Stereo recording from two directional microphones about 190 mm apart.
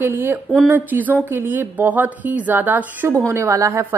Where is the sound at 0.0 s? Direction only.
10° right (ahead or behind).